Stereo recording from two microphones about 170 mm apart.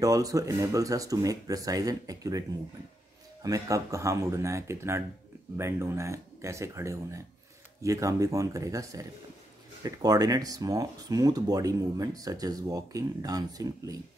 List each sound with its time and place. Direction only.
0.0 s speech: 20° right (ahead or behind)
3.4 s speech: 20° right (ahead or behind)